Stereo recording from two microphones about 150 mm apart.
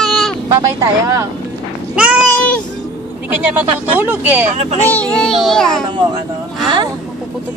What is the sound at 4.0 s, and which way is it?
Speech, 10° right (ahead or behind).